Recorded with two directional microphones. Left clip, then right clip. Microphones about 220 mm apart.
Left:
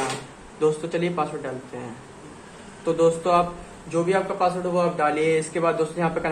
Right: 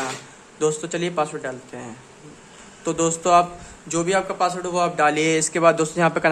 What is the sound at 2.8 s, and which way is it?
A man's voice, 35° right (ahead or behind).